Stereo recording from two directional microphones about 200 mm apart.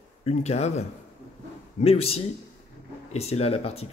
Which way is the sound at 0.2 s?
35° left (ahead or behind).